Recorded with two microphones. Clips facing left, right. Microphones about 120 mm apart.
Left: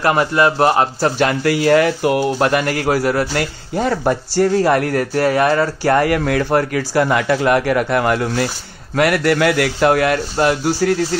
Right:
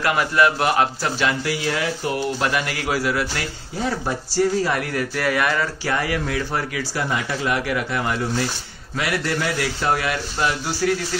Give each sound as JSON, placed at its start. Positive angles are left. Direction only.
{"t": 0.0, "sound": "a man's voice", "side_deg": 35}
{"t": 1.2, "sound": "speech", "side_deg": 55}
{"t": 3.7, "sound": "speech", "side_deg": 60}
{"t": 5.9, "sound": "a man's voice", "side_deg": 55}